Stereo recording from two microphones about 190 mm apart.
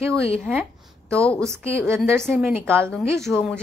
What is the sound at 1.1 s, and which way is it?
Speech, 5° left (ahead or behind).